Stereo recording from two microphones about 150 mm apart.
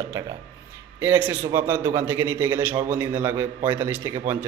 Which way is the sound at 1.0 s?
15° right (ahead or behind).